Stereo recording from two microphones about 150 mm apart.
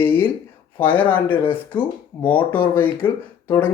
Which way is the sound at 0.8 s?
10° left (ahead or behind).